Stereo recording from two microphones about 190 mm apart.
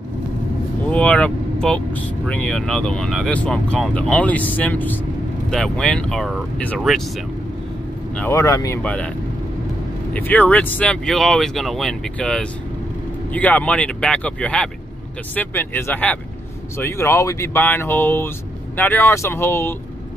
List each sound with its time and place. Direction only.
0.8 s speech: 5° left (ahead or behind)
8.1 s speech: 10° left (ahead or behind)
10.1 s speech: 10° left (ahead or behind)